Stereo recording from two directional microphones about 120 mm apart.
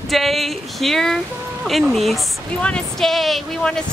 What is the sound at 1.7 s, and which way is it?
Speech, centre (ahead or behind).